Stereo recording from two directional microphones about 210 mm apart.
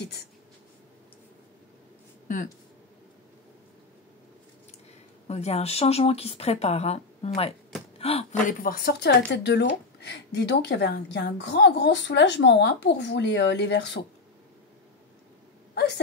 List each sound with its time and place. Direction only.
2.2 s speech: 40° left (ahead or behind)
5.3 s speech: 30° left (ahead or behind); by 14.0 s 55° left (ahead or behind)
15.7 s a sound: 55° left (ahead or behind)